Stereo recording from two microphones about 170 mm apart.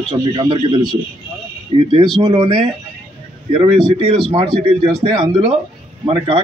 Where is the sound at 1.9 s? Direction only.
25° right (ahead or behind).